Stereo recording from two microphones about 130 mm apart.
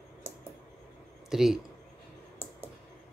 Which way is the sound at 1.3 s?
5° right (ahead or behind).